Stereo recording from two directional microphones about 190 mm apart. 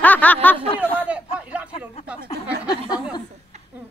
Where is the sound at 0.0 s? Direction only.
10° left (ahead or behind).